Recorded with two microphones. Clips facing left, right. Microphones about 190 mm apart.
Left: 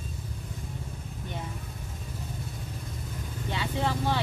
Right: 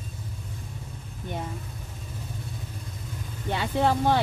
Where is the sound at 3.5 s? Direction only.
55° right (ahead or behind).